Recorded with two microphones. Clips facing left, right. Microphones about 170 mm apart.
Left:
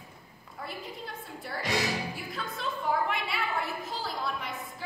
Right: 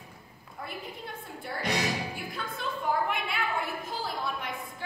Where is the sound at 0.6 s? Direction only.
Centre (ahead or behind).